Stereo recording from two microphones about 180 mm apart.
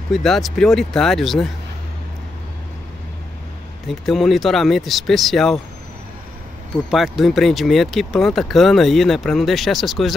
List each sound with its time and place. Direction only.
0.1 s speech: centre (ahead or behind)
3.8 s speech: centre (ahead or behind)
6.9 s speech: centre (ahead or behind)